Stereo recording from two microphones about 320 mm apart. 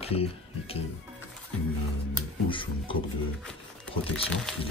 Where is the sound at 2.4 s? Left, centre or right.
Centre.